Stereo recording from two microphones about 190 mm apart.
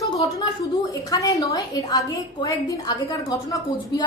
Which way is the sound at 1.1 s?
20° left (ahead or behind).